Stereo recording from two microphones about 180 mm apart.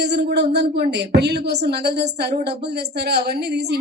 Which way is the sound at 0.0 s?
70° right (ahead or behind).